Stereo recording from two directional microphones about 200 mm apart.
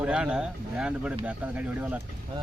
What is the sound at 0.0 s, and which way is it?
A man's voice, 5° right (ahead or behind).